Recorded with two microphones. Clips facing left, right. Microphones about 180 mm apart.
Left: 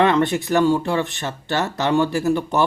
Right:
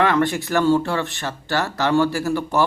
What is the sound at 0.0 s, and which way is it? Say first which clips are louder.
Speech: left 2 dB; 20° left (ahead or behind).